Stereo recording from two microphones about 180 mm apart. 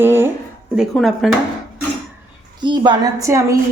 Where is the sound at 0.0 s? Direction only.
10° right (ahead or behind).